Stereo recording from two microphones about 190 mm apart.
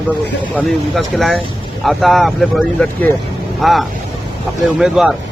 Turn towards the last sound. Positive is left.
turn(degrees=0)  # may be behind; listen again after turning